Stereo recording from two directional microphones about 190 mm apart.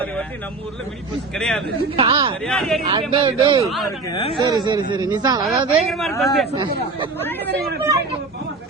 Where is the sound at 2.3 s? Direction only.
5° left (ahead or behind).